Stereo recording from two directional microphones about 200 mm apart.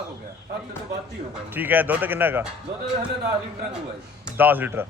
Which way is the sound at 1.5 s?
10° right (ahead or behind).